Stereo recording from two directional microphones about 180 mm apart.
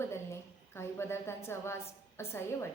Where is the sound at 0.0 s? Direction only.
15° left (ahead or behind).